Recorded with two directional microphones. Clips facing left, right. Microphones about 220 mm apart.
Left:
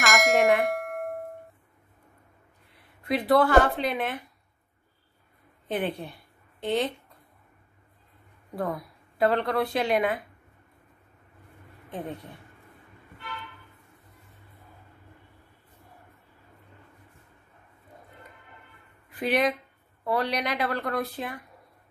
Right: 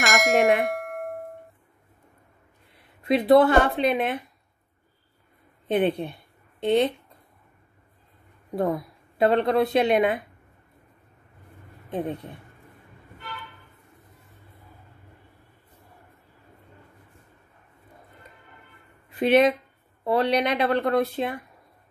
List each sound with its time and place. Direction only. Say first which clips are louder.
0.0 s bell: right 2 dB; centre (ahead or behind)
3.0 s speech: right 5 dB; 25° right (ahead or behind)
5.7 s speech: right 7 dB; 20° right (ahead or behind)
8.5 s speech: right 6 dB; 25° right (ahead or behind)
19.0 s speech: right 7 dB; 25° right (ahead or behind)